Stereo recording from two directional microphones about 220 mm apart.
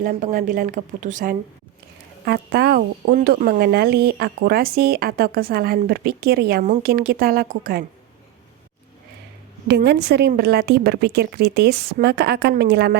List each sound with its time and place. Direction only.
0.0 s a woman's voice: 40° right (ahead or behind)
9.6 s speech: 50° right (ahead or behind)